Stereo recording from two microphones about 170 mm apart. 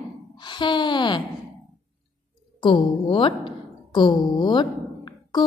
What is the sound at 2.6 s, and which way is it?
A woman's voice, 30° left (ahead or behind).